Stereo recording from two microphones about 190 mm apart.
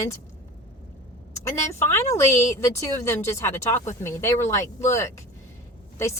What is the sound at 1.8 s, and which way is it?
A woman's voice, 15° left (ahead or behind).